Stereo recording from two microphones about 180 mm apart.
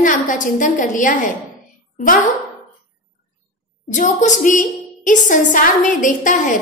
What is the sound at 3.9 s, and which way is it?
A woman's voice, 45° left (ahead or behind).